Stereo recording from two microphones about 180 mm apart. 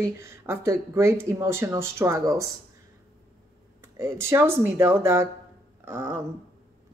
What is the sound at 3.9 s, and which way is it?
Speech, 15° right (ahead or behind).